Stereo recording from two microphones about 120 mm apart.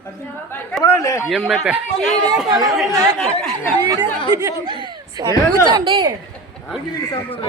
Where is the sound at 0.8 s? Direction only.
25° left (ahead or behind).